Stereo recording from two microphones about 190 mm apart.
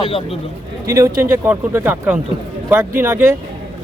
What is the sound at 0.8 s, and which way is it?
Speech, 15° right (ahead or behind).